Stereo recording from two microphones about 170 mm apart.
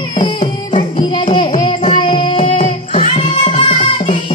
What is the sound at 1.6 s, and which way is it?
Child singing, 30° left (ahead or behind).